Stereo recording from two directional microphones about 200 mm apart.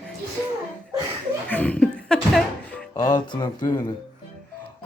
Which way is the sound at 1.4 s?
5° left (ahead or behind).